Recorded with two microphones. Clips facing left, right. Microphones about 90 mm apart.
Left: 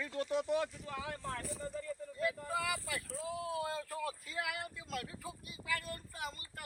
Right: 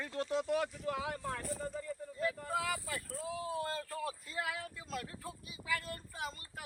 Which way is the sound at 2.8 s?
Centre (ahead or behind).